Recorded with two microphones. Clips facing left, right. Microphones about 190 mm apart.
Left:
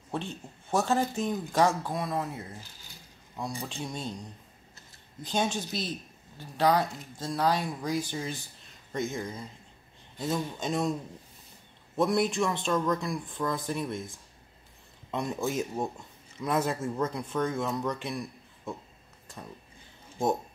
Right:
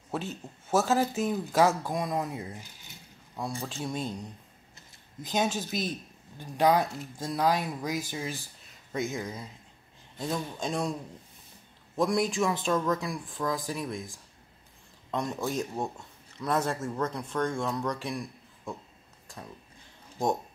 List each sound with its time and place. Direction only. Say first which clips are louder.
0.1 s speech: right 1 dB; 5° right (ahead or behind)
3.3 s speech: right 1 dB; centre (ahead or behind)
5.2 s speech: right 1 dB; 10° right (ahead or behind)
12.0 s speech: even; centre (ahead or behind)